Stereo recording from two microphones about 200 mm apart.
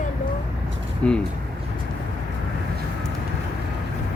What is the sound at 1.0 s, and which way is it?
Speech, 5° left (ahead or behind).